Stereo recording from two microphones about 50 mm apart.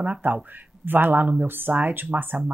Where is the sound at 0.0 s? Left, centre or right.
Right.